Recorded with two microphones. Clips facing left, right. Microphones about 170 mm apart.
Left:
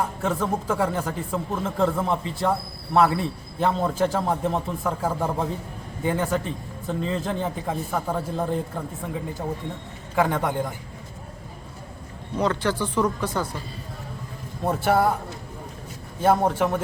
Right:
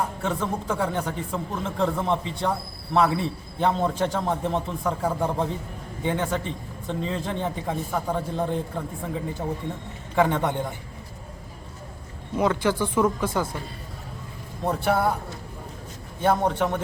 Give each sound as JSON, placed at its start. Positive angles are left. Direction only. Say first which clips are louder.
{"t": 0.2, "sound": "a man's voice", "louder": "left 2 dB", "side_deg": 0}
{"t": 10.2, "sound": "a man's voice", "louder": "even", "side_deg": 5}
{"t": 12.4, "sound": "speech", "louder": "right 1 dB", "side_deg": -10}
{"t": 14.6, "sound": "a man's voice", "louder": "left 2 dB", "side_deg": 0}
{"t": 16.2, "sound": "a man's voice", "louder": "left 2 dB", "side_deg": 5}